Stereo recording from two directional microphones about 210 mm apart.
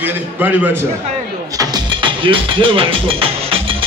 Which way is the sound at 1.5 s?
20° right (ahead or behind).